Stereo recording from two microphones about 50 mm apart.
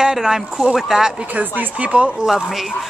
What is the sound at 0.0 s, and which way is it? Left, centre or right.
Speech, centre.